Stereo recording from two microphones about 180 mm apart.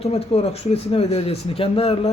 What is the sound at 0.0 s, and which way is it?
A man's voice, 35° left (ahead or behind).